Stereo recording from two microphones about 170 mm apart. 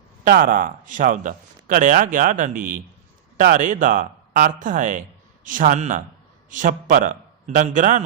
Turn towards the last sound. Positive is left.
turn(degrees=-45)  # may be behind; listen again after turning